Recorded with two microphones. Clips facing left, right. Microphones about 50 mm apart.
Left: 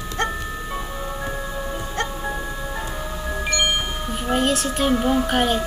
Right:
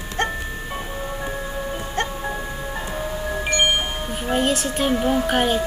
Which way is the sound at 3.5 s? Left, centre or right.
Right.